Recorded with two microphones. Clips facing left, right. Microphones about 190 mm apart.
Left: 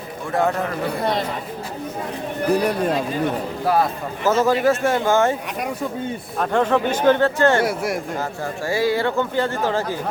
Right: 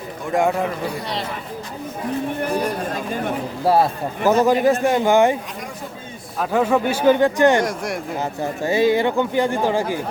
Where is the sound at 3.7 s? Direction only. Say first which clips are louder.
Right 3 dB; 30° right (ahead or behind).